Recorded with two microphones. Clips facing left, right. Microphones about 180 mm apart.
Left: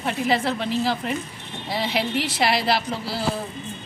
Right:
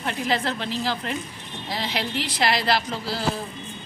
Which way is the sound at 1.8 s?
5° left (ahead or behind).